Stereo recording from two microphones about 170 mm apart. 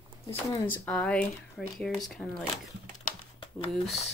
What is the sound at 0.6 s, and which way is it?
Speech, 10° left (ahead or behind).